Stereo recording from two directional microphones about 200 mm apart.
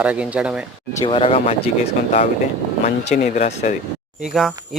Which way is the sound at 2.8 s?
35° left (ahead or behind).